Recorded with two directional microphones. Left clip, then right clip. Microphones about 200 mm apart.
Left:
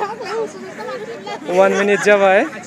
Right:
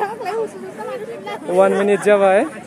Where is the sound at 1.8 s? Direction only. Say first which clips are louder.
Left 1 dB; 5° right (ahead or behind).